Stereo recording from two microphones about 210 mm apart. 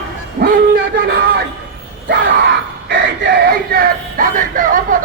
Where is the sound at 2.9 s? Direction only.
50° right (ahead or behind).